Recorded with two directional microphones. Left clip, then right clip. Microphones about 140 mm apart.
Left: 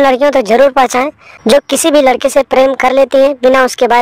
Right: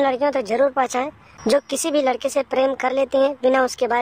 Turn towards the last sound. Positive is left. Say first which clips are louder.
# left 11 dB
turn(degrees=40)  # may be behind; listen again after turning